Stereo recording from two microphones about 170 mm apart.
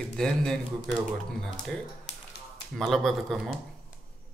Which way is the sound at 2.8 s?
Centre (ahead or behind).